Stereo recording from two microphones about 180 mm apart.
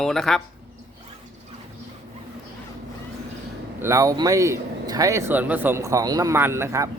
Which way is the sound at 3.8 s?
15° right (ahead or behind).